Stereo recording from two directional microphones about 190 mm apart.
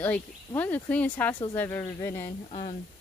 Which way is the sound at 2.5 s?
30° left (ahead or behind).